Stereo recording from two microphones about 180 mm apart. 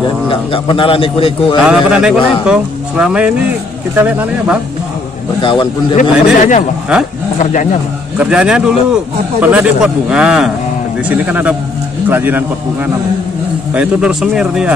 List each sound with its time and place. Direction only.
0.3 s a man's voice: 30° left (ahead or behind)
1.6 s a man's voice: 5° right (ahead or behind)
5.4 s a man's voice: 25° left (ahead or behind)
5.9 s speech: 45° left (ahead or behind)
8.2 s a man's voice: 5° right (ahead or behind)